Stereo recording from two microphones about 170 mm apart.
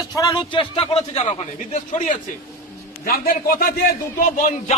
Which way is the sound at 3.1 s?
60° left (ahead or behind).